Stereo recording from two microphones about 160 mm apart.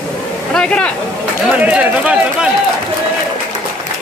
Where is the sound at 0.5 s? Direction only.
5° left (ahead or behind).